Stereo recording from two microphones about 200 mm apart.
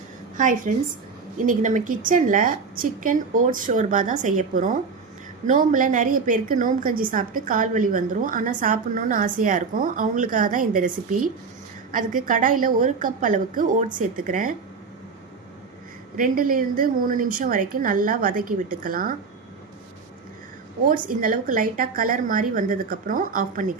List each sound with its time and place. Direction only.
0.3 s a woman's voice: 40° right (ahead or behind)
16.1 s a woman's voice: 45° right (ahead or behind)
20.9 s a woman's voice: 45° right (ahead or behind)